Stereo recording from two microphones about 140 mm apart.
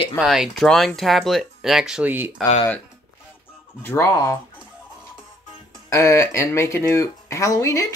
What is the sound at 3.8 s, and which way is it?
Speech, 15° left (ahead or behind).